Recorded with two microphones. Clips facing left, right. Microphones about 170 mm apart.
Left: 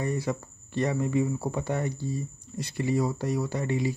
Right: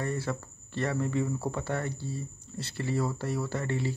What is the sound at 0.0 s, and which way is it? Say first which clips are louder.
Speech: left 3 dB; 15° left (ahead or behind).